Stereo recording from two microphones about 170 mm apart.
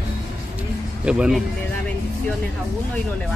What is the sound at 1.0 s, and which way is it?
Speech, 5° right (ahead or behind).